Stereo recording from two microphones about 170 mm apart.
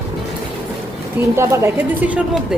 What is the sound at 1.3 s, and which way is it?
Speech, 15° right (ahead or behind).